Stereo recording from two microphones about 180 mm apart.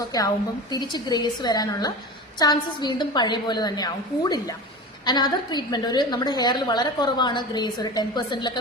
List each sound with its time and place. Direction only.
0.1 s a woman's voice: 20° left (ahead or behind)